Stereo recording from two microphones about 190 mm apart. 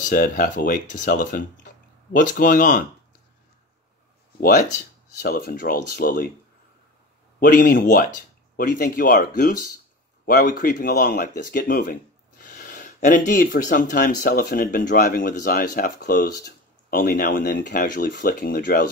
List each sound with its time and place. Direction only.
0.0 s speech: 45° left (ahead or behind)
4.4 s speech: 45° left (ahead or behind)
7.3 s speech: 45° left (ahead or behind)